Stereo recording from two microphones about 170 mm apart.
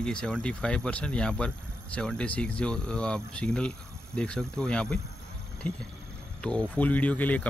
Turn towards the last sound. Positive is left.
turn(degrees=10)  # may be behind; listen again after turning